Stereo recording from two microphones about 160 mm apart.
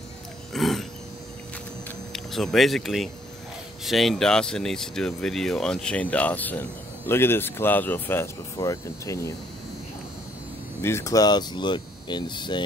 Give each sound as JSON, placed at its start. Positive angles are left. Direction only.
{"t": 0.5, "sound": "a sound", "side_deg": 0}
{"t": 2.1, "sound": "speech", "side_deg": 0}
{"t": 10.8, "sound": "speech", "side_deg": 15}